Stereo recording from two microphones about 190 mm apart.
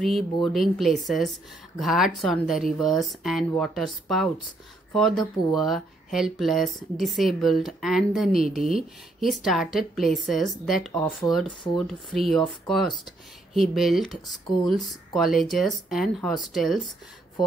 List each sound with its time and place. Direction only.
0.0 s speech: centre (ahead or behind)